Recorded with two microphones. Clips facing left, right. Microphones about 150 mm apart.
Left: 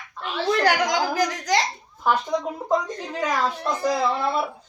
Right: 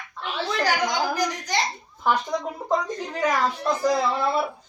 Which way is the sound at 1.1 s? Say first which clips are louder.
Left 3 dB; 90° left.